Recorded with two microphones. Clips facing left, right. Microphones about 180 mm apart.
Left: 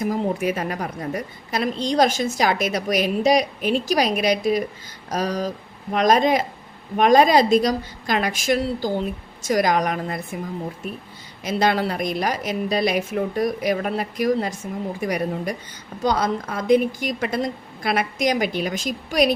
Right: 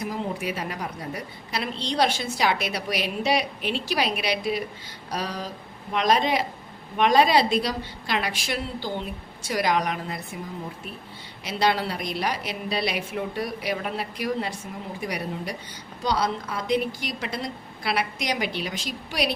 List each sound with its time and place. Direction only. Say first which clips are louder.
0.0 s a woman's voice: left 7 dB; 45° left (ahead or behind)
11.4 s a woman's voice: left 4 dB; 45° left (ahead or behind)